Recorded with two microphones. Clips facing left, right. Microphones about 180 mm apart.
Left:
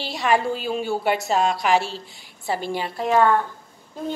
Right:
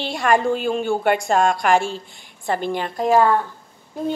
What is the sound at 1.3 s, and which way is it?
Speech, 50° right (ahead or behind).